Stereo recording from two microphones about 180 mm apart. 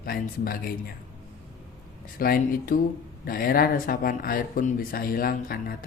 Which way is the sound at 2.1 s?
55° left (ahead or behind).